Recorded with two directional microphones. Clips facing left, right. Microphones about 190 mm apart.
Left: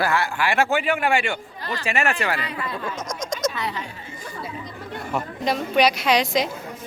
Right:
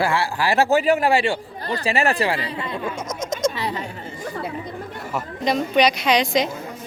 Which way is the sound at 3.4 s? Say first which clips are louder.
Right 4 dB; 30° right (ahead or behind).